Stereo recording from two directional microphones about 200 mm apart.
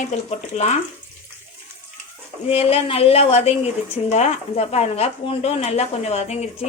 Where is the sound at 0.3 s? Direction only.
35° left (ahead or behind).